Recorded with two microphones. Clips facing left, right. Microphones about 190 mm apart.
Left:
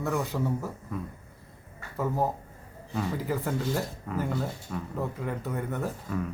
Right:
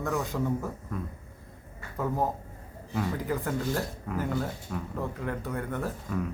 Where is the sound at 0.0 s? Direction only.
5° left (ahead or behind).